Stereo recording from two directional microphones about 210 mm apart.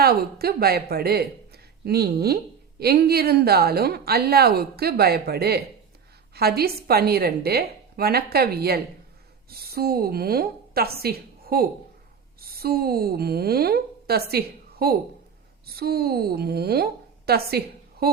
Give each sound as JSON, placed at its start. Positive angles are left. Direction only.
{"t": 0.0, "sound": "a woman's voice", "side_deg": -45}